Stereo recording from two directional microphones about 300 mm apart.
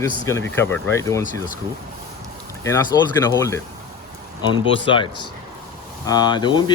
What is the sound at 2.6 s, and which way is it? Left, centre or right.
Speech, centre.